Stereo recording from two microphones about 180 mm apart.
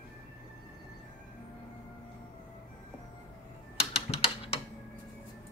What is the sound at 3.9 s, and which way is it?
Typing, 35° left (ahead or behind).